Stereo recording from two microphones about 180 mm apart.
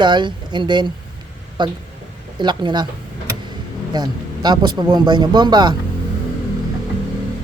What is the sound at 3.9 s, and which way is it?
Speech, 25° right (ahead or behind).